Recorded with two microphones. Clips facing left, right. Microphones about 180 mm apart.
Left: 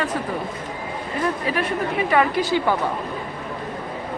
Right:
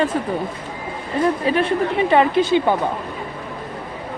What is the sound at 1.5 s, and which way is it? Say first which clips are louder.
A woman's voice: right 5 dB; 25° right (ahead or behind).